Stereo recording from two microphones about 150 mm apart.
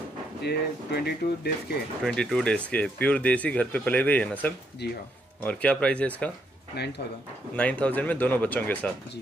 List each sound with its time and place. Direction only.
0.4 s speech: 90° left
2.0 s speech: 5° left (ahead or behind)
4.8 s speech: 90° left
5.4 s speech: 10° left (ahead or behind)
6.7 s speech: 90° left
7.5 s speech: 10° left (ahead or behind)